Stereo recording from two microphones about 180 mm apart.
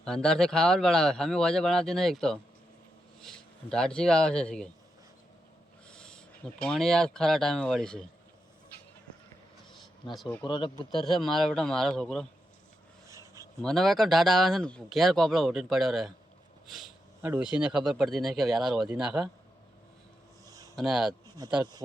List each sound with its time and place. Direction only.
0.0 s speech: 5° left (ahead or behind)
5.9 s owl: 5° left (ahead or behind)
6.7 s speech: 5° left (ahead or behind)
10.2 s speech: 5° left (ahead or behind)
10.4 s speech: 25° left (ahead or behind)
11.0 s speech: centre (ahead or behind)
13.1 s a sound: 15° right (ahead or behind)
13.6 s speech: centre (ahead or behind)
20.5 s a sound: 20° right (ahead or behind)
20.7 s speech: centre (ahead or behind)